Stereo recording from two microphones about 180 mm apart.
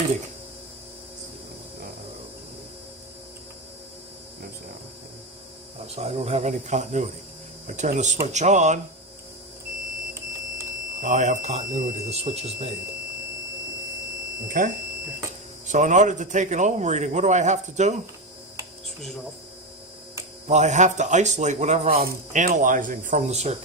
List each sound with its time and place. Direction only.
6.0 s a man's voice: 35° right (ahead or behind)
11.0 s a man's voice: 45° right (ahead or behind)
14.4 s a man's voice: 50° right (ahead or behind)
20.5 s a man's voice: 40° right (ahead or behind)